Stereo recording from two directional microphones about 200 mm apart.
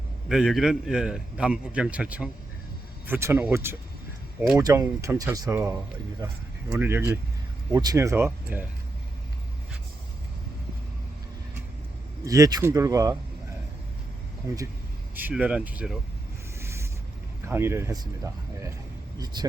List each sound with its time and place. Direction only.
0.3 s a man's voice: centre (ahead or behind)
12.2 s speech: 15° right (ahead or behind)
15.1 s speech: 10° right (ahead or behind)
16.6 s boat: 15° right (ahead or behind)
17.5 s speech: 10° right (ahead or behind)